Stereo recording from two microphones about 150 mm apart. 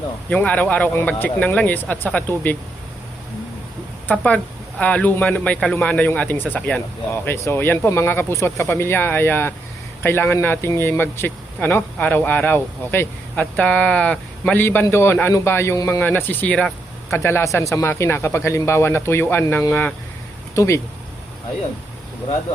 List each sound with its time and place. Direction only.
0.3 s a man's voice: 10° left (ahead or behind)
4.1 s a man's voice: 10° left (ahead or behind)